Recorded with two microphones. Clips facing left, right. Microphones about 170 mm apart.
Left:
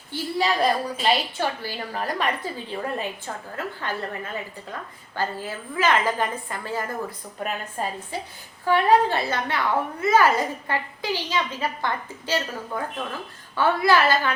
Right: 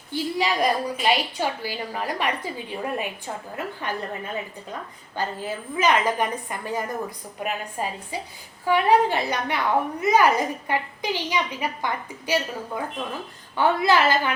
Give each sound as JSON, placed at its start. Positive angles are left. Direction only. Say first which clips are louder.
{"t": 0.1, "sound": "a woman's voice", "louder": "even", "side_deg": -15}